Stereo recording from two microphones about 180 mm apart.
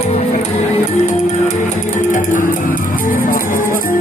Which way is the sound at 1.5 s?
45° left (ahead or behind).